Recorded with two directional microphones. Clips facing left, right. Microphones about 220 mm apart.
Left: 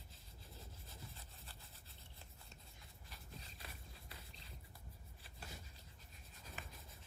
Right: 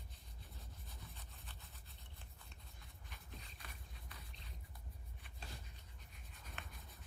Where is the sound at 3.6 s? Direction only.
30° left (ahead or behind).